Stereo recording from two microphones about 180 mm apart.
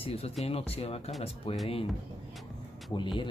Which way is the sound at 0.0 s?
35° left (ahead or behind).